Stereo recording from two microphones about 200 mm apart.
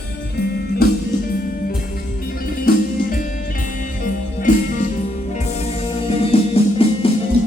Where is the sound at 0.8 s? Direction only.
50° left (ahead or behind).